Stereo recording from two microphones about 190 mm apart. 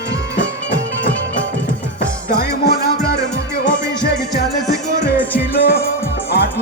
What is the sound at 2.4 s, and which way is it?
Music, 55° left (ahead or behind).